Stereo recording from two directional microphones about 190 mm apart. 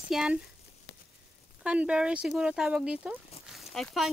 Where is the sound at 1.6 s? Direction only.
5° right (ahead or behind).